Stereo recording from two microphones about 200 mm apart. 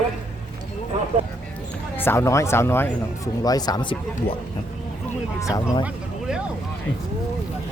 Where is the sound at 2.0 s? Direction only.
15° left (ahead or behind).